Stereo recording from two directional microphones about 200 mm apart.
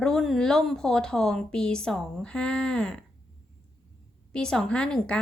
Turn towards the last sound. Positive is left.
turn(degrees=5)  # may be behind; listen again after turning